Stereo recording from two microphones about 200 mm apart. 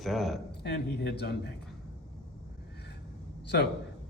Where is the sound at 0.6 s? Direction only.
55° left (ahead or behind).